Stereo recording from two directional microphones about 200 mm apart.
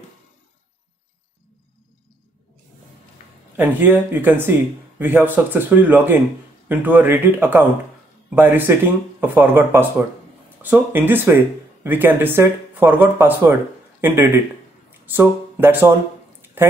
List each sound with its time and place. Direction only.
3.5 s a man's voice: 10° right (ahead or behind)